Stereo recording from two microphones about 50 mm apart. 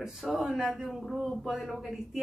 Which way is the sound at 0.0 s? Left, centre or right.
Centre.